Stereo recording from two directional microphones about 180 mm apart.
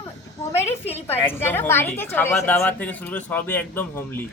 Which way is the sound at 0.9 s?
10° left (ahead or behind).